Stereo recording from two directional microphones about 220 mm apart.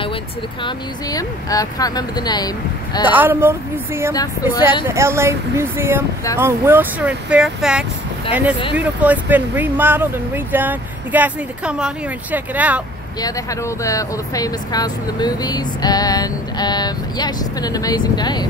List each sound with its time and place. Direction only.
0.7 s speech: 15° left (ahead or behind)
3.1 s speech: 10° right (ahead or behind)
4.1 s speech: 15° left (ahead or behind)
4.8 s speech: 10° right (ahead or behind)
13.2 s speech: 15° left (ahead or behind)